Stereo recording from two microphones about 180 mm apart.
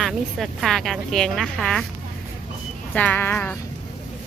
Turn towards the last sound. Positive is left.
turn(degrees=10)  # may be behind; listen again after turning